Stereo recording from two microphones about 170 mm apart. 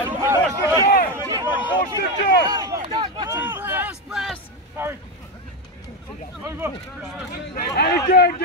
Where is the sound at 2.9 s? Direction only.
25° right (ahead or behind).